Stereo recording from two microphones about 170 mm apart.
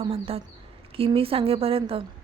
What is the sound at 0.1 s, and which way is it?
A woman's voice, 35° right (ahead or behind).